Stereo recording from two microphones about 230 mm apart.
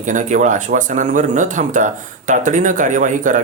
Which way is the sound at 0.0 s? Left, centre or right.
Right.